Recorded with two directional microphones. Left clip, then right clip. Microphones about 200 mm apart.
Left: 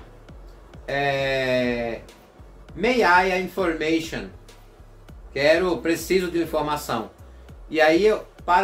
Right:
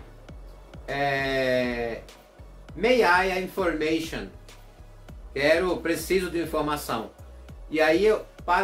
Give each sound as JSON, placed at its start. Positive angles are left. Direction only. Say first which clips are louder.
{"t": 0.8, "sound": "a sound", "louder": "left 3 dB", "side_deg": 15}
{"t": 2.8, "sound": "speech", "louder": "left 2 dB", "side_deg": 15}
{"t": 5.3, "sound": "speech", "louder": "left 3 dB", "side_deg": 15}
{"t": 8.4, "sound": "music", "louder": "left 3 dB", "side_deg": 0}